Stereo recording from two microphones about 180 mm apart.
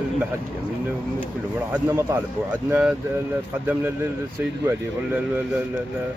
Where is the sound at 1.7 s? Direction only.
10° right (ahead or behind).